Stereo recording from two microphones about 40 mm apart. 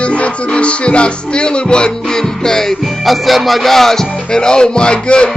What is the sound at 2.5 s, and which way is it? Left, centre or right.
Music, centre.